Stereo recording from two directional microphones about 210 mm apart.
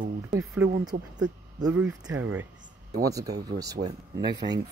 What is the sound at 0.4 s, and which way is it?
Speech, 15° right (ahead or behind).